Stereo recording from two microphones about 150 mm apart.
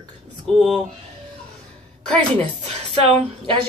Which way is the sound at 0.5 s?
Centre (ahead or behind).